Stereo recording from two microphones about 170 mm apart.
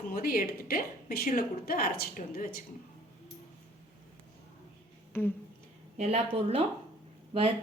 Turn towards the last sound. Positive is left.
turn(degrees=-35)  # may be behind; listen again after turning